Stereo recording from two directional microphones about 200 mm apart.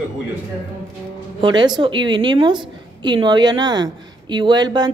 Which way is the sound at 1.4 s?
20° right (ahead or behind).